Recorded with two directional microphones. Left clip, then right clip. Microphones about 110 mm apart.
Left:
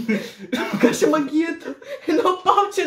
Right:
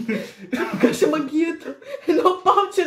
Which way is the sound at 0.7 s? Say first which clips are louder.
Left 2 dB; 15° right (ahead or behind).